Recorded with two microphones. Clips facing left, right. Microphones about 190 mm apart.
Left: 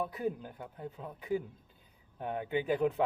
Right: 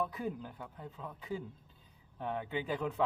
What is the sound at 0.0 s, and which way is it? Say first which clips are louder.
Speech: left 2 dB; 15° left (ahead or behind).